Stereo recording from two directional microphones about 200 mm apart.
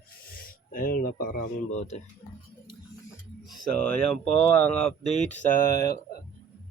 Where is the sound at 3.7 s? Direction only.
5° left (ahead or behind).